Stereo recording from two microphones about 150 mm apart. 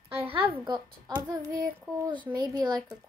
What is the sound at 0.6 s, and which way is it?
Speech, 30° right (ahead or behind).